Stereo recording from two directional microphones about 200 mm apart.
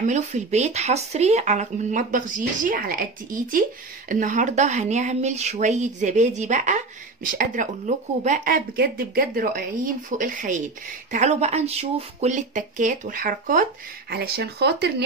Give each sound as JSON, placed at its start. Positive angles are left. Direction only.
{"t": 0.0, "sound": "speech", "side_deg": -35}